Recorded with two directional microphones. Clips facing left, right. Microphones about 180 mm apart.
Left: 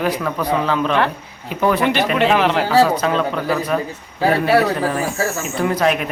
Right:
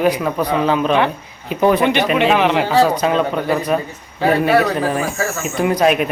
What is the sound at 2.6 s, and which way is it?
A man's voice, 15° right (ahead or behind).